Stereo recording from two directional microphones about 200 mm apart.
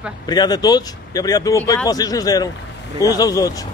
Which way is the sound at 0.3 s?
20° left (ahead or behind).